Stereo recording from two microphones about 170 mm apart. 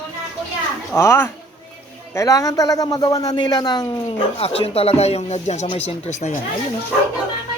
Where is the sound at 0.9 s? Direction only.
15° left (ahead or behind).